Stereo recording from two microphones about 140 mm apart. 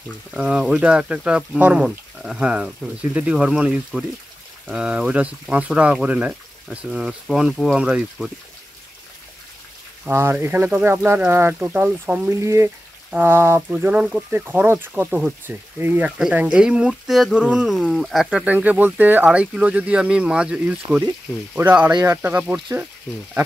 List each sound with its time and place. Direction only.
0.3 s speech: 5° right (ahead or behind)
10.0 s speech: 15° right (ahead or behind)